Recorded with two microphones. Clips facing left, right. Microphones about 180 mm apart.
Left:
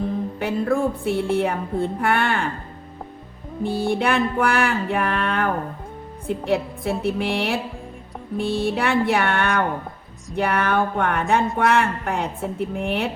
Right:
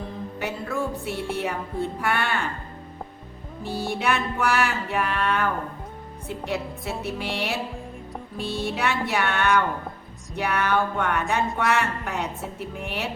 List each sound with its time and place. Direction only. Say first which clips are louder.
0.3 s speech: left 6 dB; 55° left (ahead or behind)
3.6 s speech: left 6 dB; 55° left (ahead or behind)